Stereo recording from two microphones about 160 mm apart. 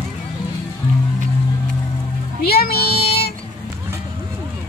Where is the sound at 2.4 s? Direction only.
75° left (ahead or behind).